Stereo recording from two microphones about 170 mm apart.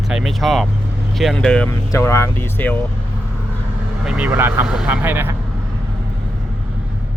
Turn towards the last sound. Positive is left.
turn(degrees=-15)  # may be behind; listen again after turning